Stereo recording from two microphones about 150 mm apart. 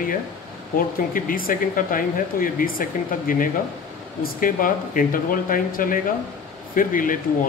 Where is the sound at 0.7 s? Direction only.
70° left (ahead or behind).